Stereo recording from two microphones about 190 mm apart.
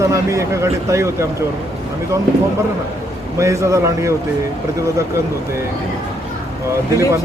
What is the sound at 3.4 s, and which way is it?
Speech, 15° right (ahead or behind).